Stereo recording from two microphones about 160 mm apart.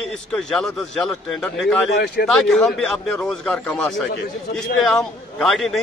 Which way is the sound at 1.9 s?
90° left.